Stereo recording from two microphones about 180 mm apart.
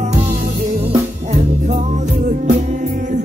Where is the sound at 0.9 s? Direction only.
40° right (ahead or behind).